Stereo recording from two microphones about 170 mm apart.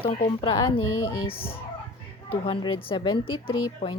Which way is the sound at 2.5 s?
30° left (ahead or behind).